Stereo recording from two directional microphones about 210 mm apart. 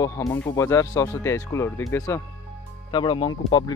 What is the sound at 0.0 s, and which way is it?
Speech, 15° left (ahead or behind).